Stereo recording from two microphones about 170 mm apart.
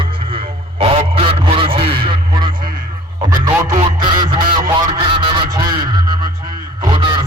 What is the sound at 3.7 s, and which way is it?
Honk, 30° right (ahead or behind).